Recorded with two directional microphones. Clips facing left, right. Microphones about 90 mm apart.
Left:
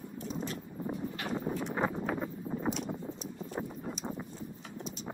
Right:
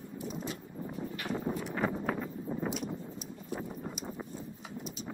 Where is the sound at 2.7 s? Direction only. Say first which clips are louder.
Left 2 dB; 5° right (ahead or behind).